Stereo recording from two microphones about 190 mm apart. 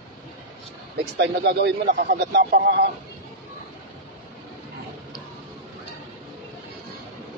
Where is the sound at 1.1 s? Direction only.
60° right (ahead or behind).